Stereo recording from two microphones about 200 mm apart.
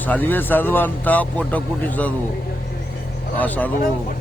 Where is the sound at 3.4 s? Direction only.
10° left (ahead or behind).